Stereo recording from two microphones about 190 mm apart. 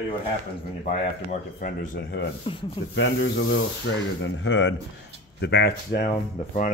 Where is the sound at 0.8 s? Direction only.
45° left (ahead or behind).